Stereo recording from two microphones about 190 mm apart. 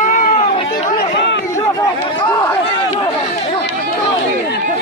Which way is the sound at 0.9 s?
65° left (ahead or behind).